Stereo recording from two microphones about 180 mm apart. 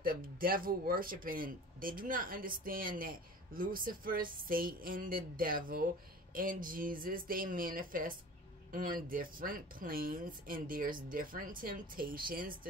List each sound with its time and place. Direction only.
0.0 s speech: 55° right (ahead or behind)